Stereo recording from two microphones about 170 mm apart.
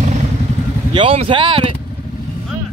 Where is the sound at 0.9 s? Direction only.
30° right (ahead or behind).